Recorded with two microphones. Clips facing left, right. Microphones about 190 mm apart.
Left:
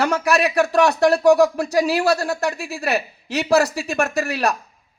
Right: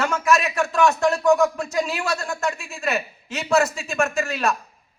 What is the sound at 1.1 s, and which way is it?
A woman's voice, 35° left (ahead or behind).